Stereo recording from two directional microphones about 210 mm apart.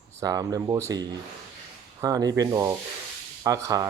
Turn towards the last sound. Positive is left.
turn(degrees=-15)  # may be behind; listen again after turning